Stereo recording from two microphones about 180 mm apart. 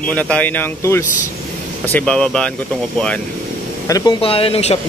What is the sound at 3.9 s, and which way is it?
Speech, 20° left (ahead or behind).